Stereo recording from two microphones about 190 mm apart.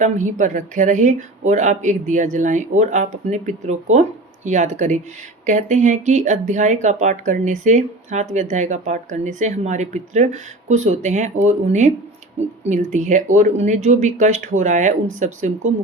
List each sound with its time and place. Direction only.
0.0 s speech: 40° right (ahead or behind)